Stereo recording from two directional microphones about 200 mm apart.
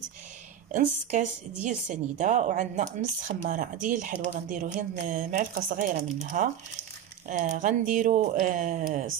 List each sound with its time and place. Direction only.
1.1 s a woman's voice: 40° right (ahead or behind)